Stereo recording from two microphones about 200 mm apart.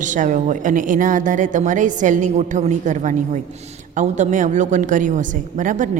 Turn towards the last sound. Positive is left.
turn(degrees=-40)  # may be behind; listen again after turning